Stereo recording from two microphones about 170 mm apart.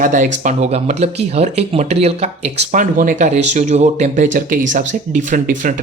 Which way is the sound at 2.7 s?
50° right (ahead or behind).